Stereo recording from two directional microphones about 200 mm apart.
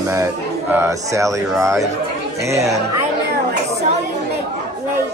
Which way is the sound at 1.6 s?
15° right (ahead or behind).